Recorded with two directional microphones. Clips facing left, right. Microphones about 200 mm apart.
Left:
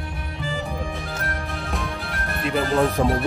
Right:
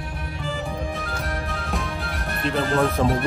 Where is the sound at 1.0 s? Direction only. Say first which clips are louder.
Right 1 dB; centre (ahead or behind).